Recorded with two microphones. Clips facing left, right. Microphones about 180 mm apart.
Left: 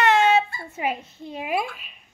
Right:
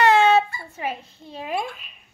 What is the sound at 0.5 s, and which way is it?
A woman's voice, 20° left (ahead or behind).